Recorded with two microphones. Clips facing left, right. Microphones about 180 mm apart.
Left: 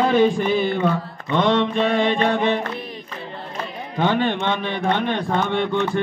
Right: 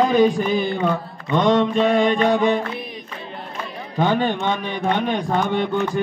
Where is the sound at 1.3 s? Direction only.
15° right (ahead or behind).